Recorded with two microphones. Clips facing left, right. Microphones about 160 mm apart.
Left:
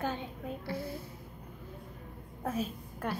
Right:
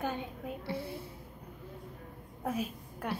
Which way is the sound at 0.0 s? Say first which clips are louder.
Even; 10° right (ahead or behind).